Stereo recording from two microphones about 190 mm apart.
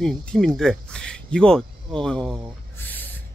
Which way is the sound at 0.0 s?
5° left (ahead or behind).